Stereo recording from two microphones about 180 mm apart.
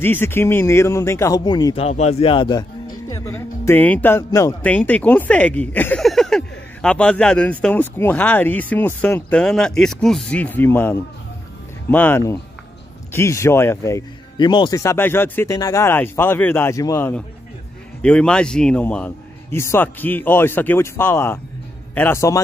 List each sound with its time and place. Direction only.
0.0 s speech: 10° left (ahead or behind)
1.9 s speech: 35° left (ahead or behind)
3.1 s speech: 15° left (ahead or behind)